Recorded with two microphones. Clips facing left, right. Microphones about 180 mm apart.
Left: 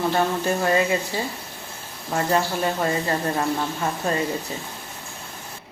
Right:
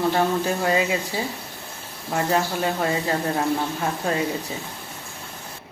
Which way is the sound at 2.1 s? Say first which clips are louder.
Even; 5° right (ahead or behind).